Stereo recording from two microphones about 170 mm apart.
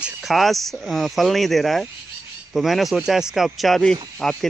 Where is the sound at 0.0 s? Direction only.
Centre (ahead or behind).